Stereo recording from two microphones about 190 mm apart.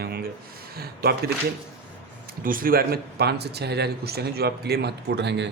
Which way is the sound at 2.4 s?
45° right (ahead or behind).